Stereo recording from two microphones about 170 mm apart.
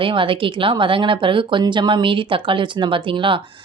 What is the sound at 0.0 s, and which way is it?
A woman's voice, 30° right (ahead or behind).